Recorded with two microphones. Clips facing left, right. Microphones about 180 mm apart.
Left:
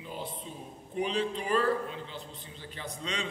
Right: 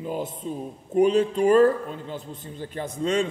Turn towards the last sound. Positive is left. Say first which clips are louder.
# right 13 dB
turn(degrees=-45)  # may be behind; listen again after turning